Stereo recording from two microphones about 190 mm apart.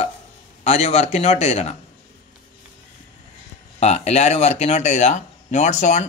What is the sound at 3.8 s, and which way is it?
Speech, 35° left (ahead or behind).